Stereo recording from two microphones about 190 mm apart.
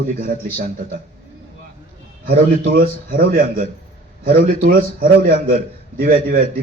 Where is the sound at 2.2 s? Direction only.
55° right (ahead or behind).